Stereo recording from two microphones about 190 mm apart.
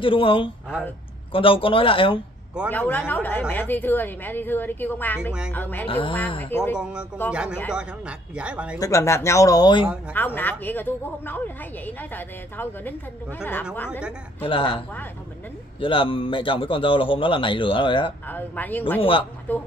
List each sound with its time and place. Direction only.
0.0 s a man's voice: 30° left (ahead or behind)
2.7 s a woman's voice: 10° left (ahead or behind)
5.9 s a man's voice: 25° left (ahead or behind)
6.5 s a woman's voice: 10° left (ahead or behind)
6.8 s speech: 5° right (ahead or behind)
8.7 s a woman's voice: 15° left (ahead or behind)
10.1 s a woman's voice: 10° left (ahead or behind)
13.4 s a woman's voice: 10° left (ahead or behind)
14.4 s a man's voice: 25° left (ahead or behind)
15.8 s a man's voice: 25° left (ahead or behind)
18.3 s a woman's voice: 10° left (ahead or behind)
18.9 s a man's voice: 25° left (ahead or behind)
19.5 s a woman's voice: 10° left (ahead or behind)